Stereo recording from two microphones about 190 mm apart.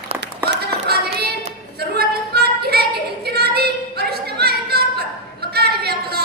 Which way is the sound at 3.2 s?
55° right (ahead or behind).